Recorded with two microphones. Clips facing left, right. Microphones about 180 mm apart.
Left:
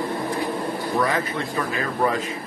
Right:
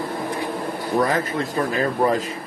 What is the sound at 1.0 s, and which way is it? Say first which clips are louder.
Speech: right 2 dB; 40° right (ahead or behind).